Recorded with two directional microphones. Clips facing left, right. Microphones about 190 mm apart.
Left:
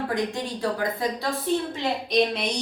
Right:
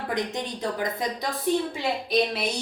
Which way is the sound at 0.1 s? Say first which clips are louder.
Left 2 dB; 20° right (ahead or behind).